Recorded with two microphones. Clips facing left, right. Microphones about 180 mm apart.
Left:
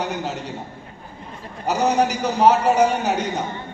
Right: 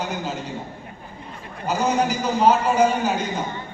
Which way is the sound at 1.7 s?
70° left (ahead or behind).